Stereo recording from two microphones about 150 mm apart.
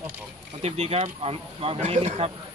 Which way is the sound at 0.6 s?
45° right (ahead or behind).